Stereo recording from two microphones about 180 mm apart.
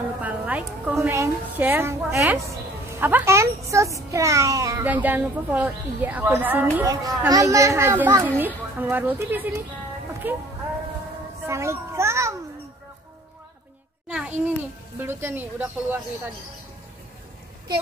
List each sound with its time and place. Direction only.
0.2 s a child's voice: 10° right (ahead or behind)
11.4 s children playing: 15° right (ahead or behind)
14.0 s a sound: 5° right (ahead or behind)
15.0 s a child's voice: 15° right (ahead or behind)